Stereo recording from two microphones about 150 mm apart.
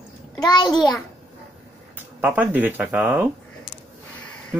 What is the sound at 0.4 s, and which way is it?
Speech, 30° left (ahead or behind).